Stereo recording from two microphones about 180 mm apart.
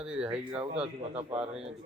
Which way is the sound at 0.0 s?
5° right (ahead or behind).